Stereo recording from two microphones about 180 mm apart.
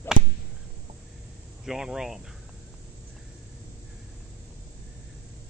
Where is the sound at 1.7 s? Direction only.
5° right (ahead or behind).